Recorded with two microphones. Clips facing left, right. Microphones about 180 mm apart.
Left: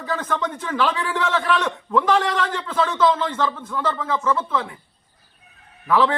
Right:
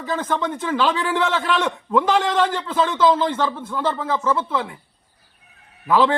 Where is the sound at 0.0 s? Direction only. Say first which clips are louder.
Right 2 dB; 25° right (ahead or behind).